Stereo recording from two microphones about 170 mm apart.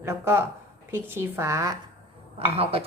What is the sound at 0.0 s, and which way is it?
A woman's voice, 15° right (ahead or behind).